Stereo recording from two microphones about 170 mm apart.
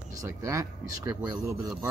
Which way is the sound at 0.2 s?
15° right (ahead or behind).